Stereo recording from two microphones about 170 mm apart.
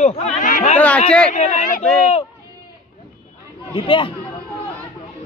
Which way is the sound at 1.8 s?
5° left (ahead or behind).